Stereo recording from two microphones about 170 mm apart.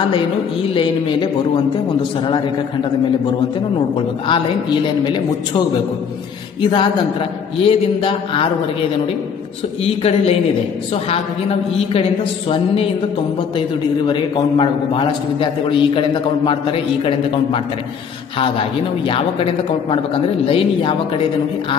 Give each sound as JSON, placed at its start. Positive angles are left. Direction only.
{"t": 0.1, "sound": "a man's voice", "side_deg": 30}
{"t": 3.9, "sound": "a man's voice", "side_deg": 30}
{"t": 6.6, "sound": "a man's voice", "side_deg": 30}
{"t": 9.8, "sound": "a man's voice", "side_deg": 35}
{"t": 11.7, "sound": "a man's voice", "side_deg": 35}